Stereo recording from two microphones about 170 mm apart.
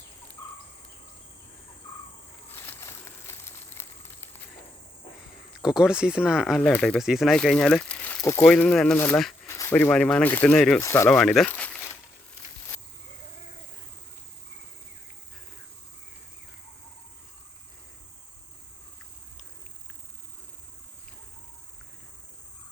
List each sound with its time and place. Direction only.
2.5 s crumpling: 15° left (ahead or behind)
5.5 s speech: 5° right (ahead or behind)
6.7 s speech: 5° left (ahead or behind)
10.8 s speech: 15° left (ahead or behind)
11.2 s crumpling: 5° left (ahead or behind)